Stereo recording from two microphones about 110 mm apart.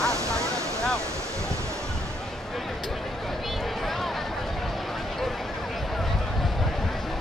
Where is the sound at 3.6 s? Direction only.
Centre (ahead or behind).